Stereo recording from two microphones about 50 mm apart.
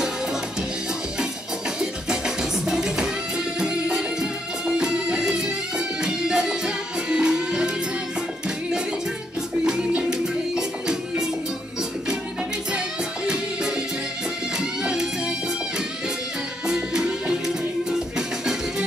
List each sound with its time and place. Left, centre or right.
1.8 s music: centre
9.7 s music: centre
14.8 s music: centre
16.6 s music: centre